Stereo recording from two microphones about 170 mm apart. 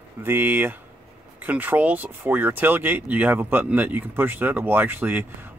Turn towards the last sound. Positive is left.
turn(degrees=-10)  # may be behind; listen again after turning